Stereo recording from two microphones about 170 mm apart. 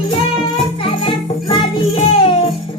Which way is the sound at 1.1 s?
30° left (ahead or behind).